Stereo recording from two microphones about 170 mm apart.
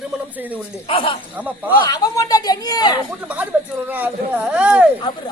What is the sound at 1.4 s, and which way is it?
Speech, 10° right (ahead or behind).